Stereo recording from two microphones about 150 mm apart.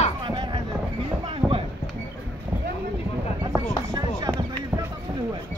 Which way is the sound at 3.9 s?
25° right (ahead or behind).